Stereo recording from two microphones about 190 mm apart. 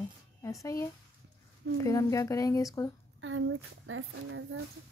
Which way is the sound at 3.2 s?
90° right.